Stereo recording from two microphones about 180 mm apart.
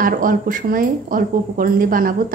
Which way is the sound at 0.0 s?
50° right (ahead or behind).